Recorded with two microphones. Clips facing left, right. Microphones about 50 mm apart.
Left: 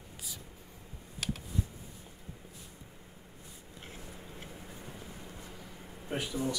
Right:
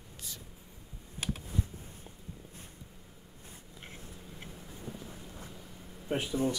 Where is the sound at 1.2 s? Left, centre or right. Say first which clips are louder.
Even; centre.